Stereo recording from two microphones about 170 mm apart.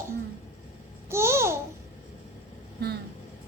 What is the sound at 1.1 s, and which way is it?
Babbling, 15° right (ahead or behind).